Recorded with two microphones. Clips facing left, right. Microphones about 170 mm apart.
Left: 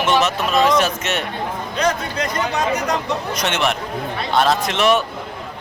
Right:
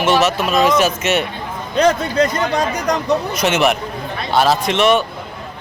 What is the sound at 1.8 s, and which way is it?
Speech, 30° right (ahead or behind).